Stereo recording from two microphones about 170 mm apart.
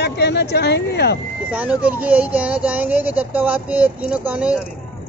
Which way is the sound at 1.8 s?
10° right (ahead or behind).